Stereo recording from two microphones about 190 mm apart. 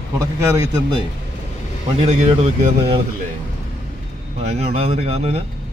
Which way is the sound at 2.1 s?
35° right (ahead or behind).